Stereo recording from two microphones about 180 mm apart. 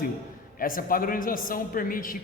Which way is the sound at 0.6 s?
50° left (ahead or behind).